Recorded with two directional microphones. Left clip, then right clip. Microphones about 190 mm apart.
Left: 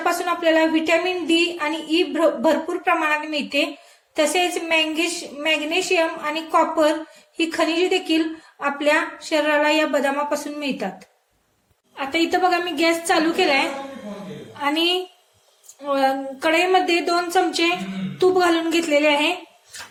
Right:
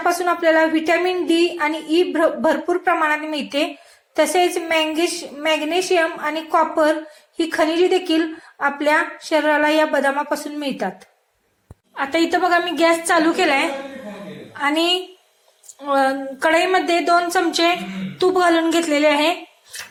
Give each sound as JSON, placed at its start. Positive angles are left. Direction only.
{"t": 0.0, "sound": "a woman's voice", "side_deg": -15}
{"t": 11.9, "sound": "a woman's voice", "side_deg": -10}